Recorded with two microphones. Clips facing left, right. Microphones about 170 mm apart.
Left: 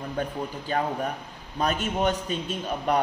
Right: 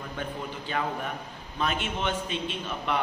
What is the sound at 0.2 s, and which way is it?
A man's voice, 40° left (ahead or behind).